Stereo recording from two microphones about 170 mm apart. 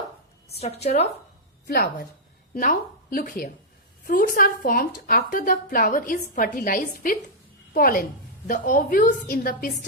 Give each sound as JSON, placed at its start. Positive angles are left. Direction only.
{"t": 0.6, "sound": "speech", "side_deg": 40}
{"t": 1.6, "sound": "a woman's voice", "side_deg": 70}
{"t": 2.6, "sound": "a woman's voice", "side_deg": 55}